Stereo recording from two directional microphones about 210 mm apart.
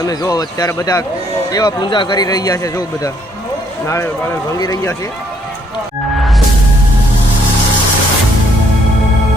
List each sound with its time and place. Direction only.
0.0 s a man's voice: 15° left (ahead or behind)